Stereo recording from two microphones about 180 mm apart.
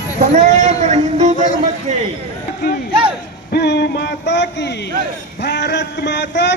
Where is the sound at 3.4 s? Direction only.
65° left (ahead or behind).